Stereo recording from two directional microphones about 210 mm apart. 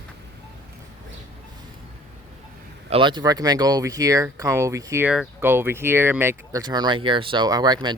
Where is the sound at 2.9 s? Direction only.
20° right (ahead or behind).